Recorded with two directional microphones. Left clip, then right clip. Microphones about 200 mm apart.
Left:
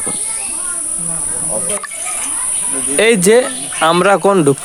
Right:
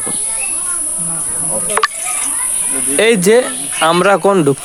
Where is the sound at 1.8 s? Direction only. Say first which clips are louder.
Right 13 dB; 50° right (ahead or behind).